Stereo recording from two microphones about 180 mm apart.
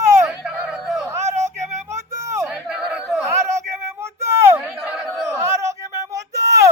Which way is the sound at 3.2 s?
15° right (ahead or behind).